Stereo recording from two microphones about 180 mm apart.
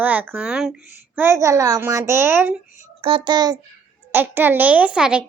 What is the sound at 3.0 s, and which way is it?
Speech, 25° right (ahead or behind).